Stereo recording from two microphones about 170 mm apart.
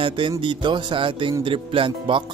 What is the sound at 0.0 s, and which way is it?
Speech, 30° right (ahead or behind).